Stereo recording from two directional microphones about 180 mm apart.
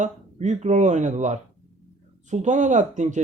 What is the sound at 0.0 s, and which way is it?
Speech, 40° right (ahead or behind).